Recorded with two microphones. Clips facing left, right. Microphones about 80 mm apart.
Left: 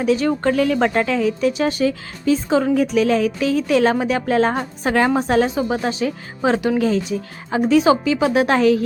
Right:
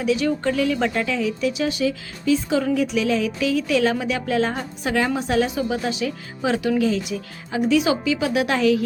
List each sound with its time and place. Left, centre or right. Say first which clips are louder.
0.0 s speech: left 3 dB; left